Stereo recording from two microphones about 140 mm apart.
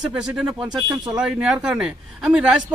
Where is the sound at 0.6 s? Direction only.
30° right (ahead or behind).